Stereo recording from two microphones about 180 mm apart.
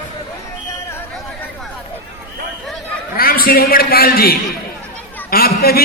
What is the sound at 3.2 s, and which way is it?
A man's voice, 55° left (ahead or behind).